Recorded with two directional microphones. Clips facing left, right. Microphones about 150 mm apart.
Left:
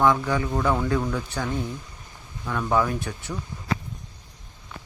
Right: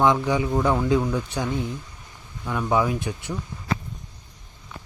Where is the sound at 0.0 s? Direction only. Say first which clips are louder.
Right 1 dB; 15° right (ahead or behind).